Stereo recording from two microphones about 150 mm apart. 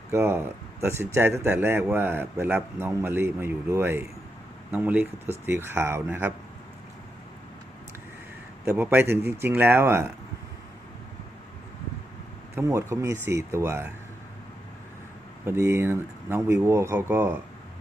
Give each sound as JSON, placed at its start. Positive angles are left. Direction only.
{"t": 0.1, "sound": "speech", "side_deg": -15}
{"t": 8.6, "sound": "speech", "side_deg": -15}
{"t": 12.5, "sound": "speech", "side_deg": -20}
{"t": 15.4, "sound": "speech", "side_deg": -20}